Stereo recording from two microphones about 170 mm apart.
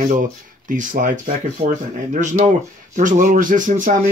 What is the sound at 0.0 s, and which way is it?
Speech, 50° right (ahead or behind).